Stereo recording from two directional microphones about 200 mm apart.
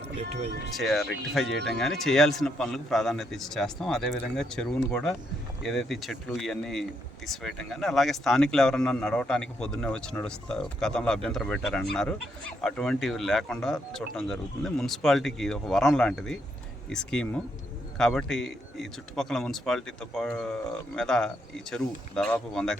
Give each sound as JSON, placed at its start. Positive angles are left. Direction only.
{"t": 0.2, "sound": "speech", "side_deg": -35}
{"t": 0.7, "sound": "speech", "side_deg": 0}